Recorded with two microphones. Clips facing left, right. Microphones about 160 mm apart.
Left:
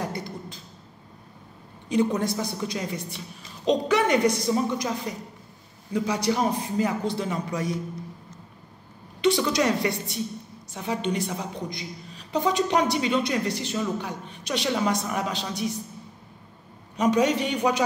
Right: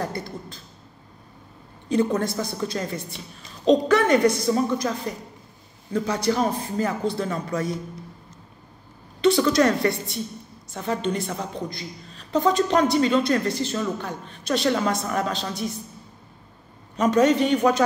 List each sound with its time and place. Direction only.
0.0 s a sound: 15° left (ahead or behind)
1.9 s a woman's voice: 15° left (ahead or behind)
9.2 s a woman's voice: 15° left (ahead or behind)
16.9 s a woman's voice: 15° left (ahead or behind)